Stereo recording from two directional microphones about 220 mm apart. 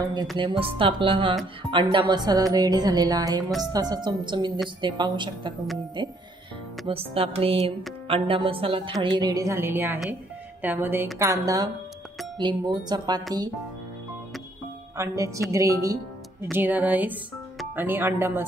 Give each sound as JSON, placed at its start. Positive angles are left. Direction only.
{"t": 0.0, "sound": "a woman's voice", "side_deg": -15}
{"t": 15.0, "sound": "a woman's voice", "side_deg": -15}